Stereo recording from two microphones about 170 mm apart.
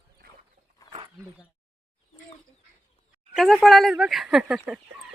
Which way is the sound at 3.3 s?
Centre (ahead or behind).